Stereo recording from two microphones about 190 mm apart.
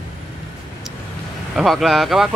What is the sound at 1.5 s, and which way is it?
Speech, centre (ahead or behind).